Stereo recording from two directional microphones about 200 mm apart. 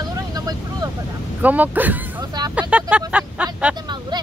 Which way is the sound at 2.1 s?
20° right (ahead or behind).